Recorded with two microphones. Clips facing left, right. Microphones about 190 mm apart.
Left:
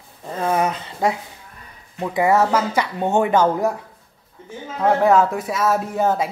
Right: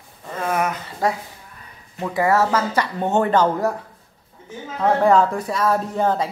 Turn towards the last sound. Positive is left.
turn(degrees=10)  # may be behind; listen again after turning